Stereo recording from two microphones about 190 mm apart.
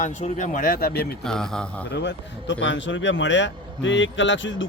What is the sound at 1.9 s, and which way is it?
Speech, 65° left (ahead or behind).